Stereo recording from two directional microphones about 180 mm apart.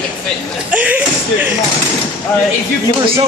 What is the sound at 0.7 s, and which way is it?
Speech, 10° right (ahead or behind).